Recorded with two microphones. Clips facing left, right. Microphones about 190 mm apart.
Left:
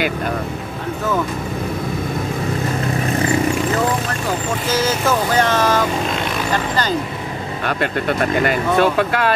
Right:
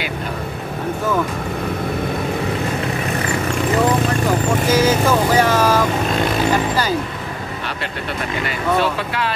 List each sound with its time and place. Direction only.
4.6 s speech: 15° right (ahead or behind)
8.5 s speech: 50° left (ahead or behind)